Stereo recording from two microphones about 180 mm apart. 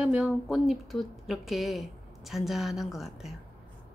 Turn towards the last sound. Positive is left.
turn(degrees=0)  # may be behind; listen again after turning